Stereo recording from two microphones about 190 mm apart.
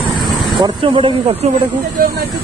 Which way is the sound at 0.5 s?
25° right (ahead or behind).